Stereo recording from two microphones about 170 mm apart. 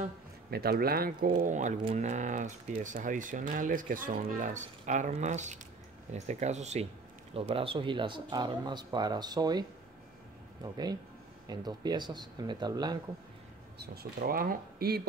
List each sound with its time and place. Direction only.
0.5 s speech: 65° right (ahead or behind); by 13.0 s 25° right (ahead or behind)
13.7 s speech: 60° right (ahead or behind)